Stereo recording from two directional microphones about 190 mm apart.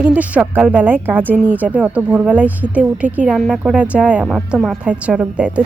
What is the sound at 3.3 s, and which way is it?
A woman's voice, 5° left (ahead or behind).